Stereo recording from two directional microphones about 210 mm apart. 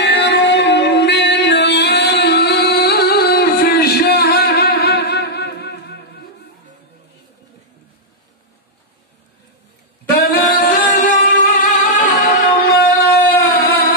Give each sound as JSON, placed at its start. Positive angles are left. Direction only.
{"t": 0.0, "sound": "music", "side_deg": 55}
{"t": 10.0, "sound": "singing", "side_deg": 45}
{"t": 11.6, "sound": "music", "side_deg": 40}
{"t": 13.5, "sound": "a sound", "side_deg": 50}